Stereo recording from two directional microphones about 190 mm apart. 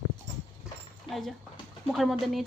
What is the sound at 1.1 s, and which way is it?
A woman's voice, centre (ahead or behind).